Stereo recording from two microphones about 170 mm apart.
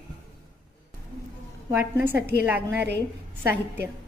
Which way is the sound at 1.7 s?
10° right (ahead or behind).